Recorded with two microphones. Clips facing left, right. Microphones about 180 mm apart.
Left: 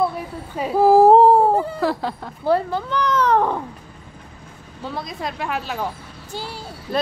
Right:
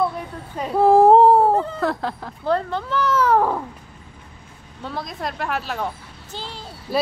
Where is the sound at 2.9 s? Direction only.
5° right (ahead or behind).